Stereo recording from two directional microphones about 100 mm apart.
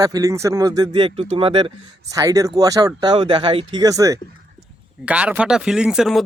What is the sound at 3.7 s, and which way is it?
Speech, 35° right (ahead or behind).